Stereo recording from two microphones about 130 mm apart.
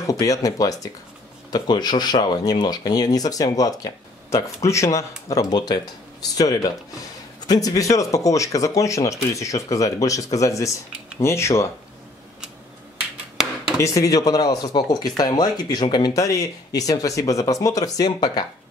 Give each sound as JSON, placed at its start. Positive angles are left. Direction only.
{"t": 0.0, "sound": "speech", "side_deg": 25}
{"t": 13.7, "sound": "speech", "side_deg": 25}